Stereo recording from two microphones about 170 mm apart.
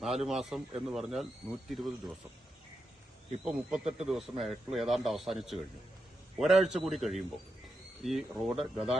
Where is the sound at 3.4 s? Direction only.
5° right (ahead or behind).